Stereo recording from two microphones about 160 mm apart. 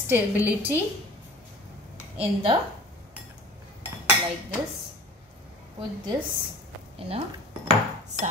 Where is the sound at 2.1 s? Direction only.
30° right (ahead or behind).